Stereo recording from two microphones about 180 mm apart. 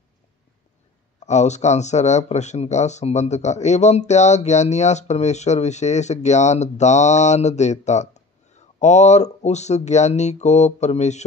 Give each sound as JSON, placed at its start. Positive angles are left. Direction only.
{"t": 1.2, "sound": "speech", "side_deg": 40}